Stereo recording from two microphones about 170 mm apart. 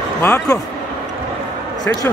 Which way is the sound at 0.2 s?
15° left (ahead or behind).